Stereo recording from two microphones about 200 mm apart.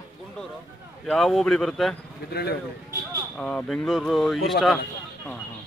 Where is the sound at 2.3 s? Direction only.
50° left (ahead or behind).